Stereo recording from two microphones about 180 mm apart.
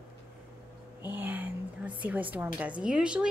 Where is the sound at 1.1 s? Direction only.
10° right (ahead or behind).